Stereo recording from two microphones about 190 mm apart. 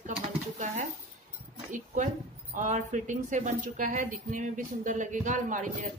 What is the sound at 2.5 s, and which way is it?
A woman's voice, 40° right (ahead or behind).